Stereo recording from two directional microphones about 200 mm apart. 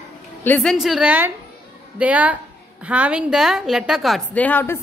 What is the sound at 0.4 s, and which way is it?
A woman's voice, 5° left (ahead or behind).